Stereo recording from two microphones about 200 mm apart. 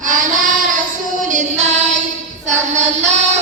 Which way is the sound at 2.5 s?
35° right (ahead or behind).